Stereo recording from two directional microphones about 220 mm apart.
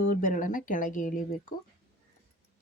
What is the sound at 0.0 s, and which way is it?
Speech, 35° left (ahead or behind).